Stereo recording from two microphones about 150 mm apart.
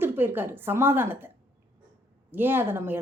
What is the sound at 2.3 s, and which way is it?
Speech, 15° right (ahead or behind).